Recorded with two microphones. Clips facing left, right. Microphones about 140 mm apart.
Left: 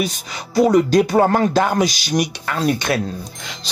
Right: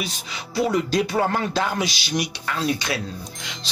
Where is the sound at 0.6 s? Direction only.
45° left (ahead or behind).